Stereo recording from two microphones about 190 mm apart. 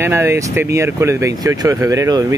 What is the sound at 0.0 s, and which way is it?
Speech, 15° right (ahead or behind).